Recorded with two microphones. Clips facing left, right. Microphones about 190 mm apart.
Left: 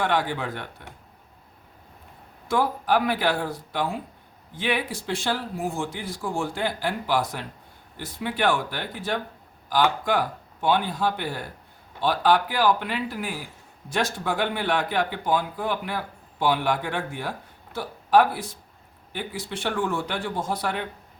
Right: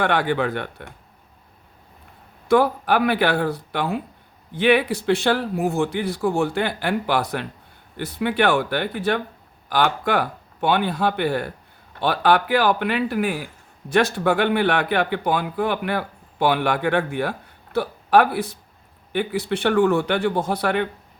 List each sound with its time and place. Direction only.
0.0 s speech: 65° right (ahead or behind)
2.5 s speech: 65° right (ahead or behind)